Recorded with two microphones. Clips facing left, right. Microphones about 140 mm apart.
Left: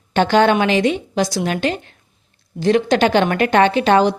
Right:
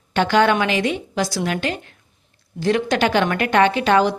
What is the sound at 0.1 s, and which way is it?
A woman's voice, 25° left (ahead or behind).